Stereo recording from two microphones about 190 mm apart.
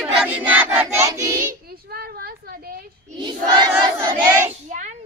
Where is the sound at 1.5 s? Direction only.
55° right (ahead or behind).